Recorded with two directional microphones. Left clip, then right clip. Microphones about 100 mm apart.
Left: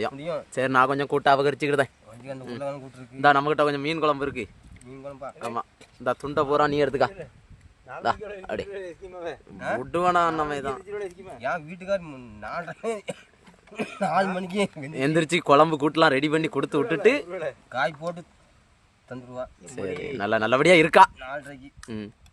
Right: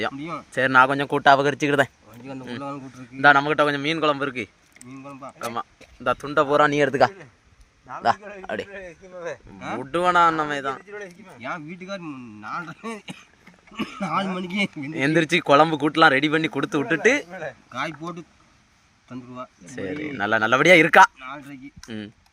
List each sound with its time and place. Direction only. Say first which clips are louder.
0.2 s a man's voice: left 2 dB; 70° left (ahead or behind)
0.5 s a man's voice: right 5 dB; 15° left (ahead or behind)
0.9 s speech: right 4 dB; 5° left (ahead or behind)
3.2 s a man's voice: right 3 dB; 20° left (ahead or behind)
5.5 s a man's voice: right 2 dB; 10° left (ahead or behind)
9.2 s a man's voice: left 1 dB; 75° left (ahead or behind)
9.9 s a man's voice: right 4 dB; 15° left (ahead or behind)
11.3 s a man's voice: left 2 dB; 80° left; by 14.7 s 60° left (ahead or behind)
14.9 s speech: right 3 dB; 20° left (ahead or behind)
17.7 s speech: left 4 dB; 55° left (ahead or behind)
19.7 s speech: right 2 dB; 15° left (ahead or behind)
21.2 s speech: left 1 dB; 55° left (ahead or behind)
21.8 s speech: right 1 dB; 40° left (ahead or behind)